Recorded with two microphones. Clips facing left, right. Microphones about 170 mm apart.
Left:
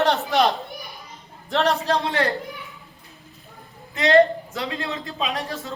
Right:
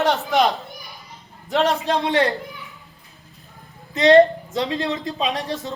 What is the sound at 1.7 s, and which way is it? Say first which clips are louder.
Speech: right 2 dB; 20° right (ahead or behind).